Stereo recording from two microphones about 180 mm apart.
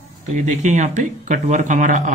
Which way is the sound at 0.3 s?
40° right (ahead or behind).